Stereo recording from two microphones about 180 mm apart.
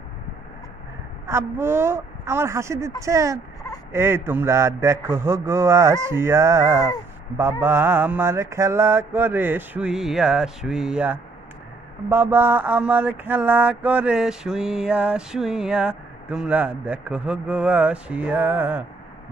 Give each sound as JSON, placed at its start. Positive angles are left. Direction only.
{"t": 1.2, "sound": "mantra", "side_deg": -15}
{"t": 3.9, "sound": "turkey", "side_deg": -15}
{"t": 4.3, "sound": "mantra", "side_deg": -15}